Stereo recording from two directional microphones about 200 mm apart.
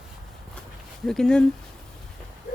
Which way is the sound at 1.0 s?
Centre (ahead or behind).